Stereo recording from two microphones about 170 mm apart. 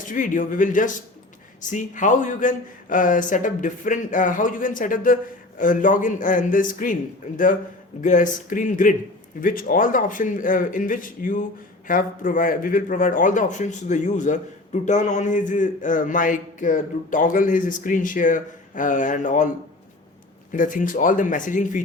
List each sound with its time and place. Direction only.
0.1 s speech: 50° left (ahead or behind)
8.0 s speech: 50° left (ahead or behind)
20.5 s speech: 50° left (ahead or behind)